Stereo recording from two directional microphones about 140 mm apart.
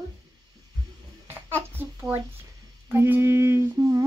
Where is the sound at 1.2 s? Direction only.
15° right (ahead or behind).